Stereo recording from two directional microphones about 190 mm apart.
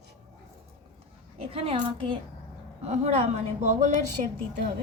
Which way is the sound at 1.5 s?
30° right (ahead or behind).